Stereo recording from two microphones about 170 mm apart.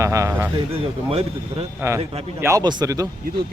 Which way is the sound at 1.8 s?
15° right (ahead or behind).